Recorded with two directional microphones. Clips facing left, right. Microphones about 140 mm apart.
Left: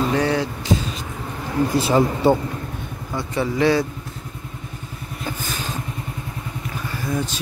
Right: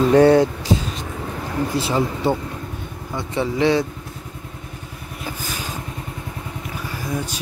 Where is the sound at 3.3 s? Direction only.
20° right (ahead or behind).